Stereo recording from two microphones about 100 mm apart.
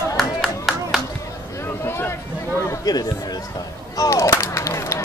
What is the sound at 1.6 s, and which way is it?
Speech, 25° left (ahead or behind).